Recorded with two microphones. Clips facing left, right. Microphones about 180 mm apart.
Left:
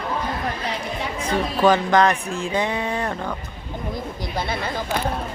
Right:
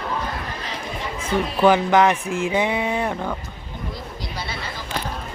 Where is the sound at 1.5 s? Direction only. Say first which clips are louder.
Right 1 dB; 15° right (ahead or behind).